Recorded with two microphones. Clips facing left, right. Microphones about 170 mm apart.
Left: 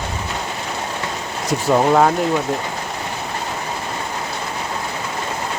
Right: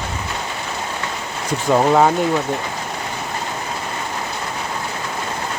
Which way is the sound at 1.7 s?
5° right (ahead or behind).